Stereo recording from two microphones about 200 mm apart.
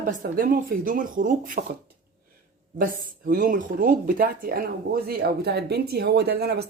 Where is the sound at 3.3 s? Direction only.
45° right (ahead or behind).